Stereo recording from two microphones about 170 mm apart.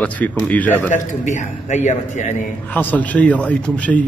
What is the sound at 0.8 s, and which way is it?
Speech, 50° left (ahead or behind).